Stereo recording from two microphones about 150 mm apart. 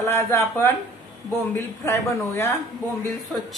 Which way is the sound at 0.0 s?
15° left (ahead or behind).